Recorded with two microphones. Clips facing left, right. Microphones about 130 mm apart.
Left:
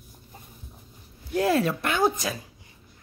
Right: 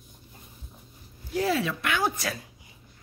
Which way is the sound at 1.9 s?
25° left (ahead or behind).